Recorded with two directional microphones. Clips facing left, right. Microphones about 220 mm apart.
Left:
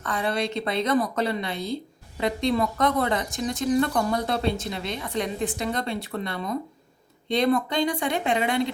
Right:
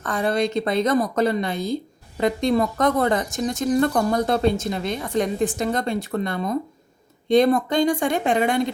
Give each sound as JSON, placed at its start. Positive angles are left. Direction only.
{"t": 0.0, "sound": "speech", "side_deg": -45}